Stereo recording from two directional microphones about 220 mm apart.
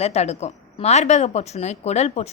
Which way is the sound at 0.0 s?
30° left (ahead or behind).